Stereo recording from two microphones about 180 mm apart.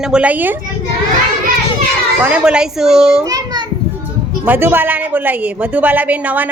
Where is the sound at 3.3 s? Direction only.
20° right (ahead or behind).